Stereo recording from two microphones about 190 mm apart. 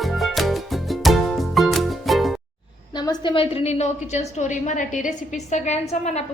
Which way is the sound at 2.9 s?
20° left (ahead or behind).